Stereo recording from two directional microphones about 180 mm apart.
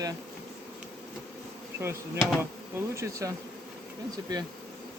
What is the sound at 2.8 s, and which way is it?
Speech, 15° right (ahead or behind).